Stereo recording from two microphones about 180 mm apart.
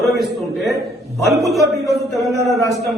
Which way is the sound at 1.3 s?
Centre (ahead or behind).